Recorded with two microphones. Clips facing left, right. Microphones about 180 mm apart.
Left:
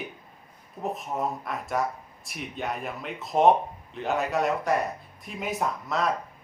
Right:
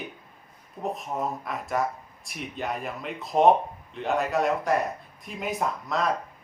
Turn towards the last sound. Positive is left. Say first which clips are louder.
# even
turn(degrees=0)  # may be behind; listen again after turning